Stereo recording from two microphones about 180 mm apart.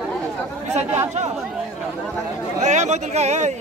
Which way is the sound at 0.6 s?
40° right (ahead or behind).